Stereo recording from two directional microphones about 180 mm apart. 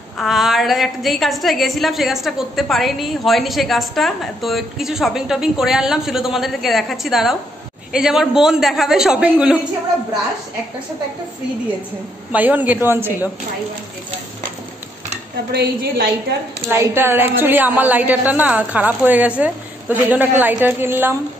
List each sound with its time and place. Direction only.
0.2 s a woman's voice: centre (ahead or behind)
12.3 s a woman's voice: 10° right (ahead or behind)
15.5 s a woman's voice: 60° right (ahead or behind)
16.7 s a woman's voice: 15° right (ahead or behind)